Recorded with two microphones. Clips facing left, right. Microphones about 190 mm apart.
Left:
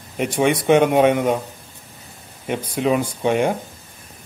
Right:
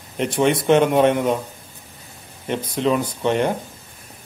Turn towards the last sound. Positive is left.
turn(degrees=10)  # may be behind; listen again after turning